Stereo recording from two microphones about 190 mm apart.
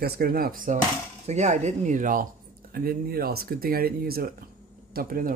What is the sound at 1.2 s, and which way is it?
Speech, 35° right (ahead or behind).